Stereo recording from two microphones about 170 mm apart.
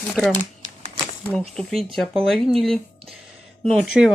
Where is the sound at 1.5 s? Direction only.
Centre (ahead or behind).